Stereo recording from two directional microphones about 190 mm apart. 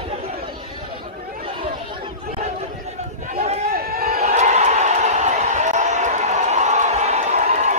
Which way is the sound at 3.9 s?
50° right (ahead or behind).